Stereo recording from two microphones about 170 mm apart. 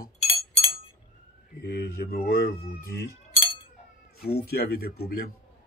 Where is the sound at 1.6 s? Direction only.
60° left (ahead or behind).